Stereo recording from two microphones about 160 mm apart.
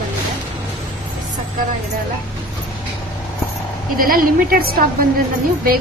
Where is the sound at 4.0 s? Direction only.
65° right (ahead or behind).